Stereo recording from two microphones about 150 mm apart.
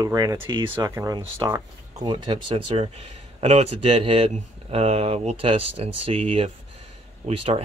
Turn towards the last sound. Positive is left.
turn(degrees=-40)  # may be behind; listen again after turning